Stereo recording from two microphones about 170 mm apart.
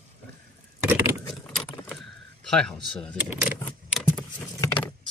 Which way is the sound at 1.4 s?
5° left (ahead or behind).